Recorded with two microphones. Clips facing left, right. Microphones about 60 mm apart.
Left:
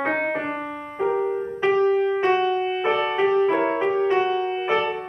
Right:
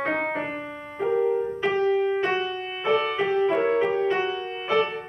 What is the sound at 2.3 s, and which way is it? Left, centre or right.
Music, left.